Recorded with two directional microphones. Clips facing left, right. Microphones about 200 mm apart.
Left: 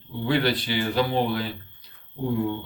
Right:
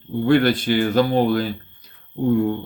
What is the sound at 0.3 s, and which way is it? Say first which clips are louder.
Speech: right 7 dB; 50° right (ahead or behind).